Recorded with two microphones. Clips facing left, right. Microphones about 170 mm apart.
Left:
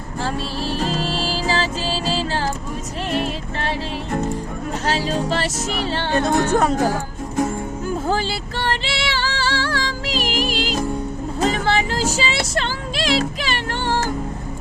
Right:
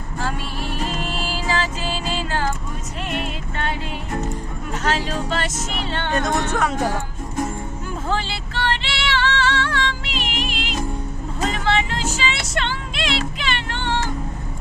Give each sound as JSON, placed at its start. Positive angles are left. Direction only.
{"t": 0.2, "sound": "music", "side_deg": 30}
{"t": 4.9, "sound": "speech", "side_deg": 35}
{"t": 7.9, "sound": "music", "side_deg": 40}